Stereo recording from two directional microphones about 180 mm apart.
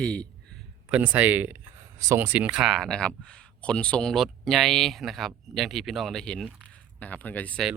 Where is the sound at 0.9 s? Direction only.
10° right (ahead or behind).